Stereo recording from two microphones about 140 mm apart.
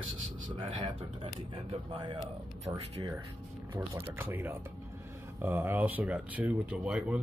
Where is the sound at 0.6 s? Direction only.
35° right (ahead or behind).